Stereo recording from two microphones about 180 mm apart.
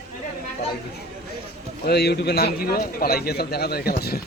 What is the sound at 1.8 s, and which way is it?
A man's voice, 65° left (ahead or behind).